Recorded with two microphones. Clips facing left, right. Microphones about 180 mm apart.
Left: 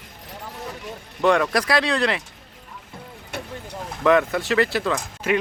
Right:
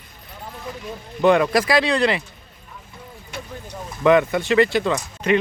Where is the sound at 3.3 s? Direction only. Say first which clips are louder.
Left 2 dB; 65° left (ahead or behind).